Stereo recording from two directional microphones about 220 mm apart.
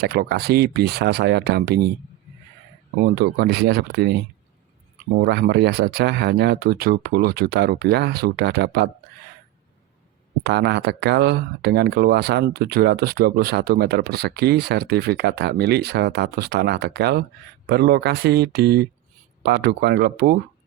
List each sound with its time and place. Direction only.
0.0 s speech: 45° right (ahead or behind)
2.9 s speech: 45° right (ahead or behind)
5.2 s speech: 50° right (ahead or behind)
10.4 s speech: 50° right (ahead or behind)